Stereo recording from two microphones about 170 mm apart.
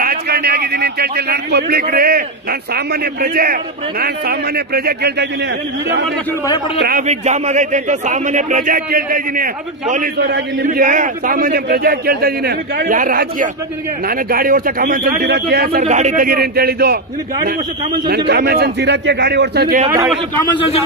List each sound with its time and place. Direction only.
0.0 s a man's voice: 65° right (ahead or behind)
6.8 s a man's voice: 60° right (ahead or behind)
7.1 s speech: 40° right (ahead or behind)
10.1 s a man's voice: 75° right (ahead or behind)
15.8 s speech: 45° right (ahead or behind)
16.3 s a man's voice: 65° right (ahead or behind)
18.0 s a man's voice: 75° right (ahead or behind)